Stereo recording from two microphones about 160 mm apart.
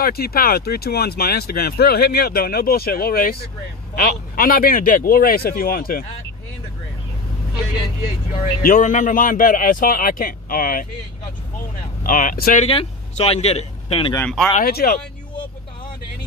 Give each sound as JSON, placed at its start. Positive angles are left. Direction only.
{"t": 0.0, "sound": "a man's voice", "side_deg": 70}
{"t": 8.6, "sound": "a man's voice", "side_deg": 55}
{"t": 12.0, "sound": "a man's voice", "side_deg": 60}
{"t": 12.6, "sound": "speech", "side_deg": 40}
{"t": 14.6, "sound": "speech", "side_deg": 70}